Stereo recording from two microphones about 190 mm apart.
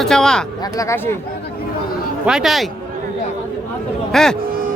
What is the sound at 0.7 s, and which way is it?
Speech, 15° left (ahead or behind).